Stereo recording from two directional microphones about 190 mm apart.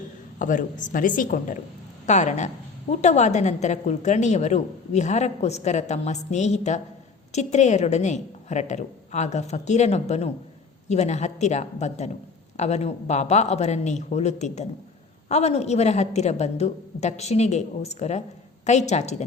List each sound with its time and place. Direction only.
0.3 s a woman's voice: 45° left (ahead or behind)